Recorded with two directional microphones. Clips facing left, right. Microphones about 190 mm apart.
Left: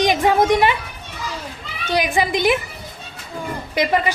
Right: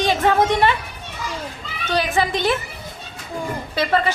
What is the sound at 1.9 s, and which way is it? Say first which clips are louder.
Speech: left 1 dB; 15° left (ahead or behind).